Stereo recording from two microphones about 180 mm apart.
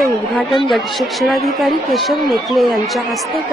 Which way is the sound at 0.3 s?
Centre (ahead or behind).